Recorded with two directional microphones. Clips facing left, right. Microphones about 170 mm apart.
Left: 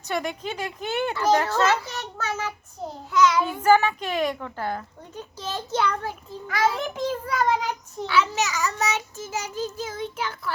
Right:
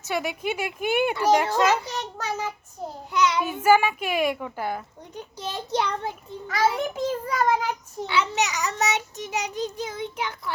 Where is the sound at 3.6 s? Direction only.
10° right (ahead or behind).